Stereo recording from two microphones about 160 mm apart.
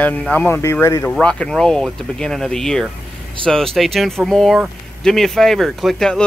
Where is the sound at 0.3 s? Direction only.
15° left (ahead or behind).